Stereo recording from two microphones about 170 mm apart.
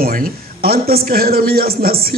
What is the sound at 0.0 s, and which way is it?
A man's voice, 60° right (ahead or behind).